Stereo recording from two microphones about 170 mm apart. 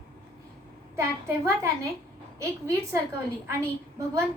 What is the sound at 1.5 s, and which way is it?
A woman's voice, 15° right (ahead or behind).